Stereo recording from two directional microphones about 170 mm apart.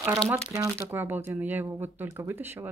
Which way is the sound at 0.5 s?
15° right (ahead or behind).